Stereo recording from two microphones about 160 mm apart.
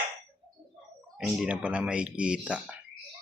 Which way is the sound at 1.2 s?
5° right (ahead or behind).